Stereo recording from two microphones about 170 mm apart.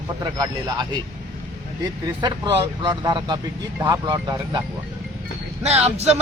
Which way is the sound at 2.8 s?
25° right (ahead or behind).